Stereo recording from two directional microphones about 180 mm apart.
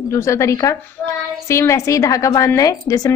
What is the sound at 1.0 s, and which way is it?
Child singing, 5° left (ahead or behind).